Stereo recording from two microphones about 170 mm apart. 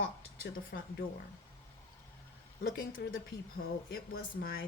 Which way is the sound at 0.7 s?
80° left.